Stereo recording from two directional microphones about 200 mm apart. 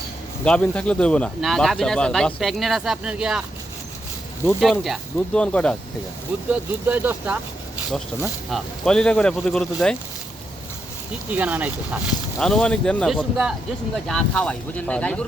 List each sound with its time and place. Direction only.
0.4 s speech: 5° left (ahead or behind)
4.6 s speech: centre (ahead or behind)
6.5 s speech: 10° right (ahead or behind)
8.4 s speech: centre (ahead or behind)
11.3 s speech: 5° right (ahead or behind)
12.4 s speech: 5° left (ahead or behind)